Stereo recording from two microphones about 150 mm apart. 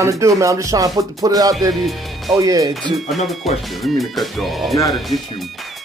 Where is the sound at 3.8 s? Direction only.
Centre (ahead or behind).